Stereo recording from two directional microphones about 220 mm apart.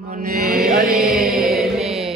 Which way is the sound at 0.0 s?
40° right (ahead or behind).